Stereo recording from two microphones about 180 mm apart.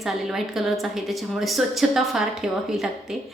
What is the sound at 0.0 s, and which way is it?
A woman's voice, centre (ahead or behind).